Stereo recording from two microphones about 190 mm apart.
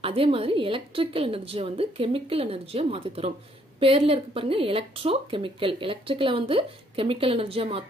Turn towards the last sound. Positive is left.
turn(degrees=-30)  # may be behind; listen again after turning